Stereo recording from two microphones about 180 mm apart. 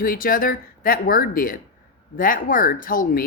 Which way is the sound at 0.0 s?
55° left (ahead or behind).